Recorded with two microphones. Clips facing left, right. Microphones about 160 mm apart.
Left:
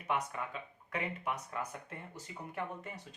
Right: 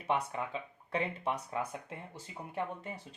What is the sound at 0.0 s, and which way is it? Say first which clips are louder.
Speech: right 3 dB; 25° right (ahead or behind).